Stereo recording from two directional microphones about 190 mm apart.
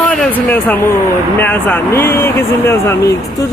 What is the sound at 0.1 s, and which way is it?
A man's voice, 5° left (ahead or behind).